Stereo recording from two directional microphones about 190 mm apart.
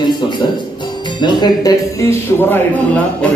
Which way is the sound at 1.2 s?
25° left (ahead or behind).